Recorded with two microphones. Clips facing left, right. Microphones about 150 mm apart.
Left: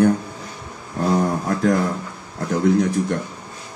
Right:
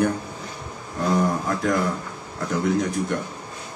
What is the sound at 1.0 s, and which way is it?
Speech, 35° left (ahead or behind).